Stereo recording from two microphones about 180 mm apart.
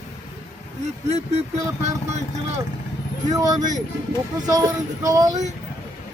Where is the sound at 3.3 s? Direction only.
20° right (ahead or behind).